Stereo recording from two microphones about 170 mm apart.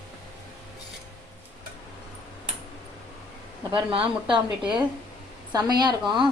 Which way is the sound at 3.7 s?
30° right (ahead or behind).